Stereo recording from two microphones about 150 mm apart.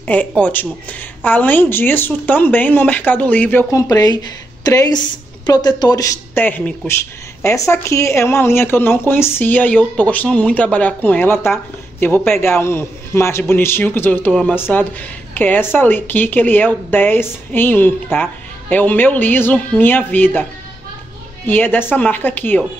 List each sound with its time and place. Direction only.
0.0 s speech: 10° left (ahead or behind)
3.7 s a woman's voice: 25° left (ahead or behind)
21.5 s speech: 15° left (ahead or behind)